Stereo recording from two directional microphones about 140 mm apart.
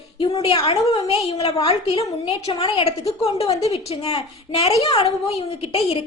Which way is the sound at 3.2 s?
45° left (ahead or behind).